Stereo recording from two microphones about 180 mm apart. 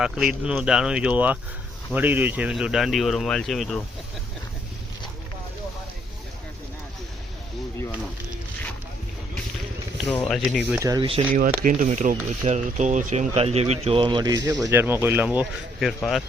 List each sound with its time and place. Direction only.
0.0 s speech: 5° right (ahead or behind)
10.0 s speech: 5° left (ahead or behind)
10.7 s speech: 15° right (ahead or behind)
11.3 s speech: 50° right (ahead or behind); by 16.0 s 5° right (ahead or behind)